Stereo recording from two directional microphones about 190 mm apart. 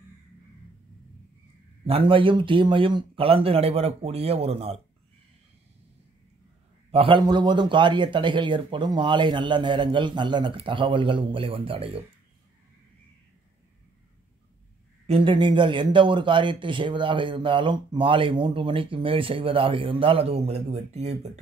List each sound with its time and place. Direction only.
1.9 s speech: 30° right (ahead or behind)
6.9 s speech: 30° right (ahead or behind)
15.0 s speech: 30° right (ahead or behind)